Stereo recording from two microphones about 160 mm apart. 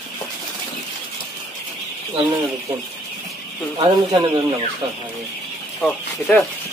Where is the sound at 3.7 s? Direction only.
30° right (ahead or behind).